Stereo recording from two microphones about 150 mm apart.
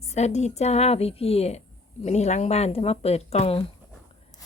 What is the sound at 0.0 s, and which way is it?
A woman's voice, 45° left (ahead or behind).